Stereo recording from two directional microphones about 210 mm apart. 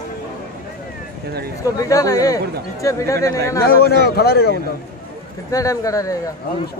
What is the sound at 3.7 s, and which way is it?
Speech, 50° left (ahead or behind).